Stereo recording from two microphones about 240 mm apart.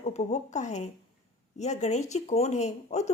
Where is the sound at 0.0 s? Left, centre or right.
Left.